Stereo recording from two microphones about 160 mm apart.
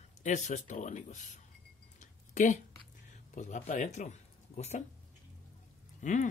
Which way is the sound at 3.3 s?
50° left (ahead or behind).